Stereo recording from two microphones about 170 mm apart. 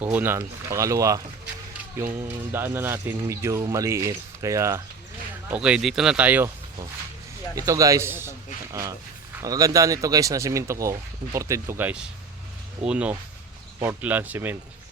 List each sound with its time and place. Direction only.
0.0 s speech: 10° right (ahead or behind)
5.5 s speech: 5° right (ahead or behind)
7.5 s a man's voice: 20° right (ahead or behind)